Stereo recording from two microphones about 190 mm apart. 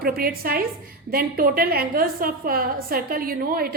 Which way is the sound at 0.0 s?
50° right (ahead or behind).